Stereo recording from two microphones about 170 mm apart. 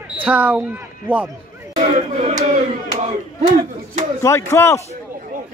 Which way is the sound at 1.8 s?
40° right (ahead or behind).